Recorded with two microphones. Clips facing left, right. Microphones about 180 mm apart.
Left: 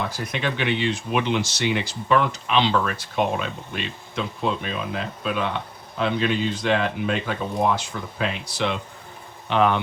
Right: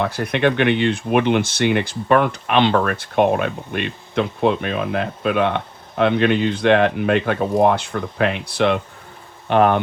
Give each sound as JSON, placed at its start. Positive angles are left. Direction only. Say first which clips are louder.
{"t": 0.0, "sound": "speech", "louder": "right 8 dB", "side_deg": -60}
{"t": 9.5, "sound": "speech", "louder": "right 5 dB", "side_deg": -50}